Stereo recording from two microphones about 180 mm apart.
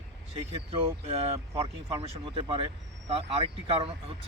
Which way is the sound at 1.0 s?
35° right (ahead or behind).